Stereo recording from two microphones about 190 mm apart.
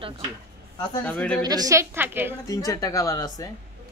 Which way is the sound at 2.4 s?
20° left (ahead or behind).